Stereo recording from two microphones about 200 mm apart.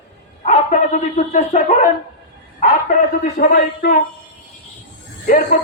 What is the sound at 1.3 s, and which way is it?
Speech, 35° left (ahead or behind).